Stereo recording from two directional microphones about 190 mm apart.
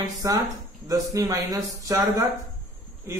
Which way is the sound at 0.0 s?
20° right (ahead or behind).